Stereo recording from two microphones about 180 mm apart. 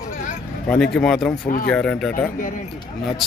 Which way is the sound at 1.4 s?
50° left (ahead or behind).